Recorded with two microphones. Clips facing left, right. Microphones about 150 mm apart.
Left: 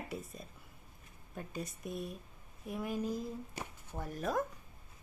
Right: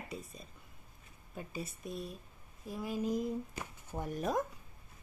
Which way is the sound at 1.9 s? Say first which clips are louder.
Left 1 dB; 55° left (ahead or behind).